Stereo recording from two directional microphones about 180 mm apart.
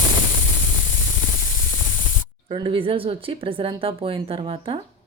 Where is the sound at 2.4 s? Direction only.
25° right (ahead or behind).